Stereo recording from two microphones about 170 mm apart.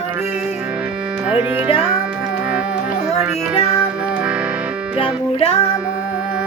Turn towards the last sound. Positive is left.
turn(degrees=35)  # may be behind; listen again after turning